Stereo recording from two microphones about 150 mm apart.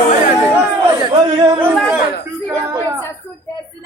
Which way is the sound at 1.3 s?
30° right (ahead or behind).